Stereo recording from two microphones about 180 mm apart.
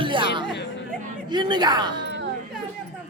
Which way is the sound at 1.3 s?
25° right (ahead or behind).